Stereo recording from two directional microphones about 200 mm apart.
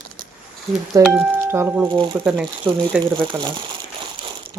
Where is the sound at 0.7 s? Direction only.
Centre (ahead or behind).